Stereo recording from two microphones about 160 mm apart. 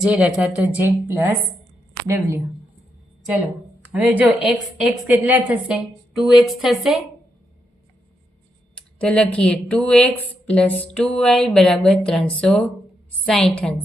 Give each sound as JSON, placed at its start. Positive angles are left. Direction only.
{"t": 0.0, "sound": "a woman's voice", "side_deg": -5}
{"t": 3.8, "sound": "a woman's voice", "side_deg": -10}
{"t": 8.7, "sound": "a woman's voice", "side_deg": 5}